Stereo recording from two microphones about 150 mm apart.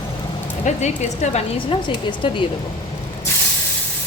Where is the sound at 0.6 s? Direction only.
50° left (ahead or behind).